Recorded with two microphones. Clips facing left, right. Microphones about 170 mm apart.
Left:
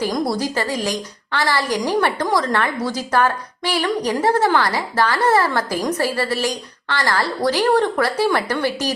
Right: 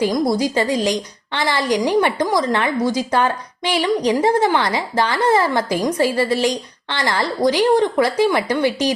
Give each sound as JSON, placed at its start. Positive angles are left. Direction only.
{"t": 0.3, "sound": "a woman's voice", "side_deg": -20}